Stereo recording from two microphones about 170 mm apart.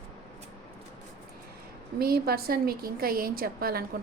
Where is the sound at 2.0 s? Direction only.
65° right (ahead or behind).